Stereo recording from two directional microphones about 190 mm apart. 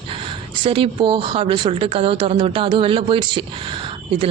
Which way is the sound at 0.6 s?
25° right (ahead or behind).